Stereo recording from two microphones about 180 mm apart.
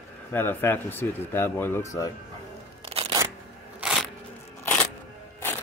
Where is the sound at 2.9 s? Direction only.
30° right (ahead or behind).